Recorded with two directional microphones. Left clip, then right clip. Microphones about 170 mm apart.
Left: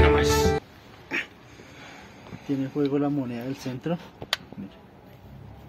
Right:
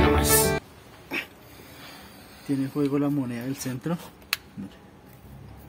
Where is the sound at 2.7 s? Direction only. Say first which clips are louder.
Left 1 dB; 40° right (ahead or behind).